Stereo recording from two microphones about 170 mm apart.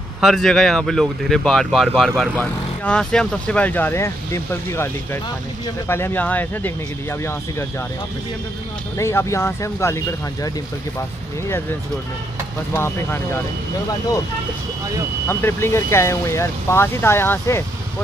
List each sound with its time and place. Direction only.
0.2 s speech: centre (ahead or behind)
8.9 s speech: 15° left (ahead or behind)
12.7 s speech: 15° left (ahead or behind)
15.2 s speech: 15° left (ahead or behind)